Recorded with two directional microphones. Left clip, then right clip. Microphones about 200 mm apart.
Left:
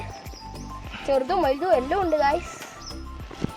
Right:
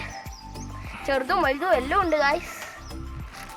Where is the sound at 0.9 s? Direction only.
Centre (ahead or behind).